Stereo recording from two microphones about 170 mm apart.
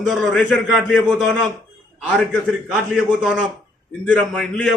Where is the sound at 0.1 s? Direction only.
Centre (ahead or behind).